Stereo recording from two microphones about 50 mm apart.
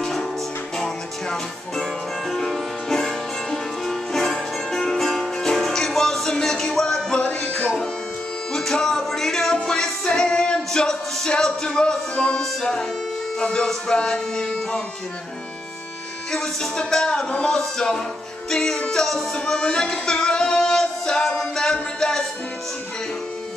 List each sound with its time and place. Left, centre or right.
0.0 s music: centre
7.2 s music: left
8.5 s music: centre
13.4 s speech: centre
16.3 s speech: centre
19.3 s music: centre